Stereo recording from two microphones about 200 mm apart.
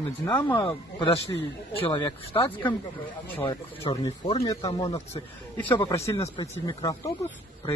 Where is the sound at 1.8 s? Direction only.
25° left (ahead or behind).